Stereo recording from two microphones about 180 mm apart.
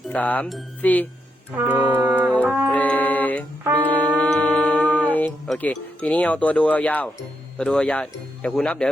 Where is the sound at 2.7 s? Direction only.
10° left (ahead or behind).